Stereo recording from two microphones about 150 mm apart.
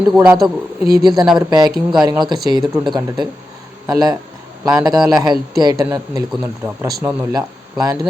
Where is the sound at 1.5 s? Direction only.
25° right (ahead or behind).